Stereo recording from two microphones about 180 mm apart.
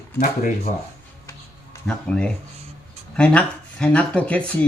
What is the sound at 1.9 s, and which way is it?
Speech, 5° left (ahead or behind).